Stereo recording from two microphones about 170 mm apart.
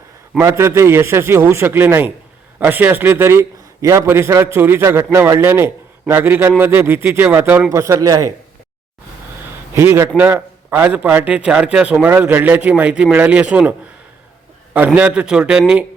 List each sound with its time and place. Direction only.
0.3 s a man's voice: 15° right (ahead or behind)
9.7 s a man's voice: 15° right (ahead or behind)